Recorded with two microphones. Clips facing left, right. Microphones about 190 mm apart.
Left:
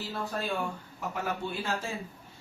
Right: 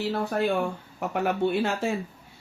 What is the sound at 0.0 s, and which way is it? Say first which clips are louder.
Speech: right 9 dB; 70° right (ahead or behind).